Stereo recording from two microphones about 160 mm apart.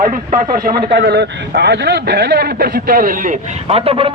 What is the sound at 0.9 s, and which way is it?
A man's voice, 90° right.